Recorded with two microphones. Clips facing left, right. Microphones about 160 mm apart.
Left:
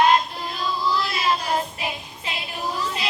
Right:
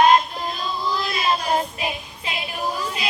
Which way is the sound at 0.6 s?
20° right (ahead or behind).